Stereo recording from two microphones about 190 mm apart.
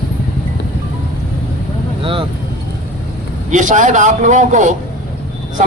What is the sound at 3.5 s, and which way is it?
A man's voice, 40° right (ahead or behind).